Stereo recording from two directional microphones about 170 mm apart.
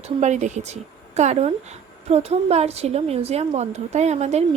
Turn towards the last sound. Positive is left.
turn(degrees=-40)  # may be behind; listen again after turning